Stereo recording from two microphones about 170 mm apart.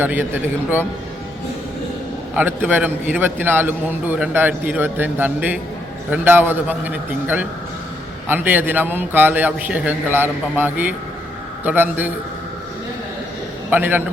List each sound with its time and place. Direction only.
0.0 s a man's voice: 10° right (ahead or behind)
2.3 s a man's voice: 10° right (ahead or behind)
13.7 s a man's voice: 10° right (ahead or behind)